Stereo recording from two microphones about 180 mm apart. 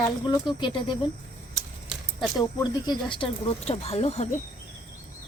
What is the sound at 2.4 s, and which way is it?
Speech, 20° left (ahead or behind).